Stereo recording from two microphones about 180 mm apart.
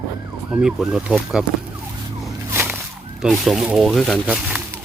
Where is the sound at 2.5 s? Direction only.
10° right (ahead or behind).